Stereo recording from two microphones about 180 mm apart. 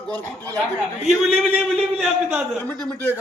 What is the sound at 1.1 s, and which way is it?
A man's voice, 5° right (ahead or behind).